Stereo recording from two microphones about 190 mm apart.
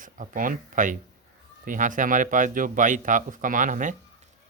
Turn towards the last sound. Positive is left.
turn(degrees=-45)  # may be behind; listen again after turning